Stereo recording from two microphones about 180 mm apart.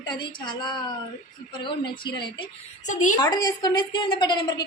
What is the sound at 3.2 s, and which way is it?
A woman's voice, 25° left (ahead or behind).